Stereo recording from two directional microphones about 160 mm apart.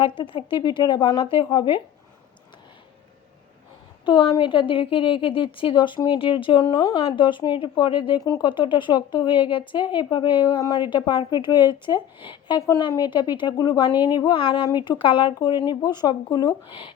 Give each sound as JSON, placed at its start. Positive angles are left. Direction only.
{"t": 0.2, "sound": "speech", "side_deg": 30}
{"t": 4.0, "sound": "a woman's voice", "side_deg": 30}